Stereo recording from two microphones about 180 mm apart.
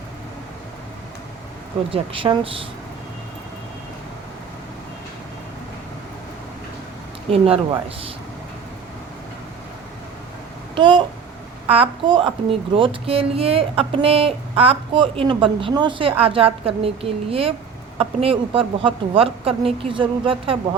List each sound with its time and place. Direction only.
1.9 s speech: 30° right (ahead or behind)
7.3 s speech: 30° right (ahead or behind)
10.8 s a child's voice: 25° right (ahead or behind)